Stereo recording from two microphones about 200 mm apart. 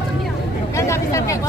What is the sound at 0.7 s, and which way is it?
Speech, 15° left (ahead or behind).